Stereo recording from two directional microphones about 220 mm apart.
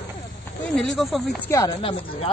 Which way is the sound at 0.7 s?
Centre (ahead or behind).